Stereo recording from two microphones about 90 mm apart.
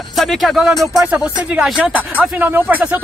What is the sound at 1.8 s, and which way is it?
Speech, 20° right (ahead or behind).